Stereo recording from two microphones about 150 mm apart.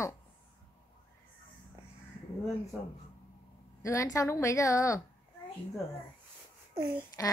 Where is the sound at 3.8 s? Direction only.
20° left (ahead or behind).